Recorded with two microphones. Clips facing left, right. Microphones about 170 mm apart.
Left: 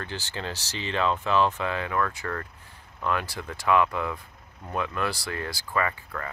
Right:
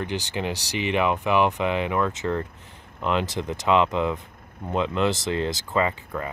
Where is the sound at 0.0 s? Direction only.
15° right (ahead or behind).